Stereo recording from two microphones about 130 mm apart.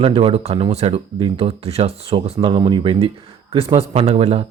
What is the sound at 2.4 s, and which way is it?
Speech, 40° right (ahead or behind).